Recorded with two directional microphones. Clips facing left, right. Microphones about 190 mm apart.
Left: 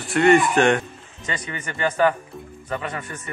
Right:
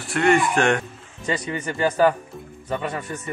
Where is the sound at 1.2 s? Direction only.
35° right (ahead or behind).